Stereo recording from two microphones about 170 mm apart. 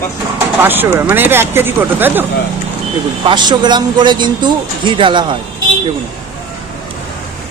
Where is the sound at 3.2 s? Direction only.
25° right (ahead or behind).